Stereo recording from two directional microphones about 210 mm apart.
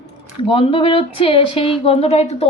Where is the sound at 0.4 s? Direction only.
25° left (ahead or behind).